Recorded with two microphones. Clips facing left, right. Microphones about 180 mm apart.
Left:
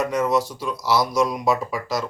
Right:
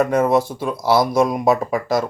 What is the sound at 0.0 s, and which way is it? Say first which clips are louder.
Speech: right 5 dB; 55° right (ahead or behind).